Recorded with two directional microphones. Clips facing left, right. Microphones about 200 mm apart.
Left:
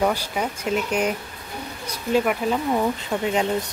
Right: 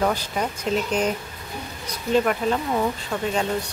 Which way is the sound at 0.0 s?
10° left (ahead or behind).